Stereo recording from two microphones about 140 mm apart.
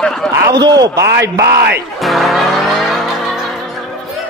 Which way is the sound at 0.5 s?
30° right (ahead or behind).